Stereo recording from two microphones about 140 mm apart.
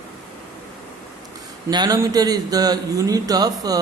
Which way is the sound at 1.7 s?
25° right (ahead or behind).